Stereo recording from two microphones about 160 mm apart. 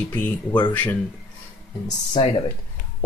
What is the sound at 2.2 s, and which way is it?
Speech, 30° left (ahead or behind).